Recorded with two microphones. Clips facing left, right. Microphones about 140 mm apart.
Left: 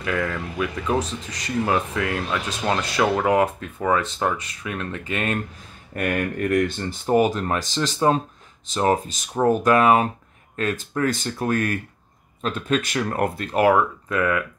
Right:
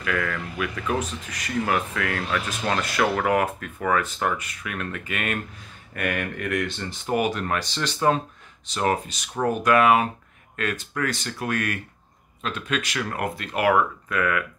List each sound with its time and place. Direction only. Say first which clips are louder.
0.0 s speech: left 2 dB; 25° left (ahead or behind)
9.7 s speech: right 1 dB; 35° left (ahead or behind)